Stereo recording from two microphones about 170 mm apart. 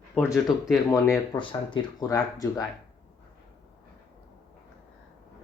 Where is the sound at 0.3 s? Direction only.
20° left (ahead or behind).